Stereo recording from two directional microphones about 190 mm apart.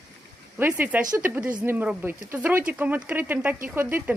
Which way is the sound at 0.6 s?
10° right (ahead or behind).